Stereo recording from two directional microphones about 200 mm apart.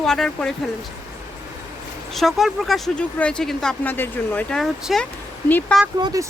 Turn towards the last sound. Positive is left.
turn(degrees=-20)  # may be behind; listen again after turning